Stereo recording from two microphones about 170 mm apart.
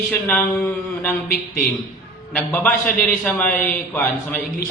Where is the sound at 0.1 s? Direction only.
10° left (ahead or behind).